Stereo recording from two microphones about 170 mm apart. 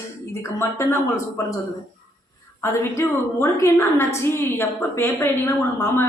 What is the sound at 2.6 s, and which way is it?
A woman's voice, 15° left (ahead or behind).